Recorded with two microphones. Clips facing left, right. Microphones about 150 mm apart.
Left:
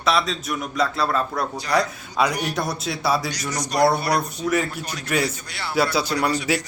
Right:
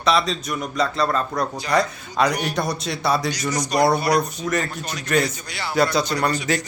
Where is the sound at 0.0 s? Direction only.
Centre (ahead or behind).